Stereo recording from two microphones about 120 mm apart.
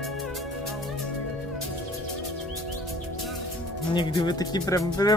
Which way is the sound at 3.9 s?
40° left (ahead or behind).